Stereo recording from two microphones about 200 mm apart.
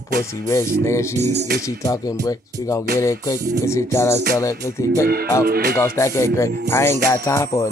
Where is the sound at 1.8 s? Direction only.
15° left (ahead or behind).